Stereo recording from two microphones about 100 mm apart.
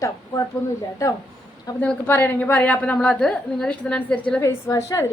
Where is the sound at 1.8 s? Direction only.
15° left (ahead or behind).